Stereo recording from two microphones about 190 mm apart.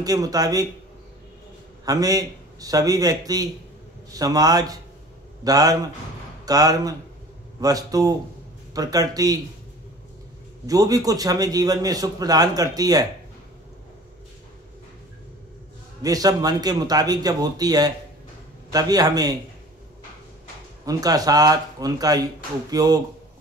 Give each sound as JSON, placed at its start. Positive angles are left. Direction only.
{"t": 0.0, "sound": "a man's voice", "side_deg": -20}
{"t": 1.9, "sound": "a man's voice", "side_deg": -20}
{"t": 10.7, "sound": "a man's voice", "side_deg": -20}
{"t": 16.0, "sound": "a man's voice", "side_deg": -20}
{"t": 20.8, "sound": "a man's voice", "side_deg": -20}